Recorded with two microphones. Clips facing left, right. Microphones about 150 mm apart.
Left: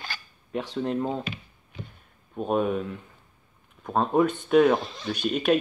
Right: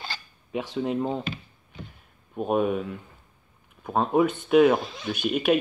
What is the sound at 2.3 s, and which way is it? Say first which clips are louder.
Speech: right 1 dB; 5° right (ahead or behind).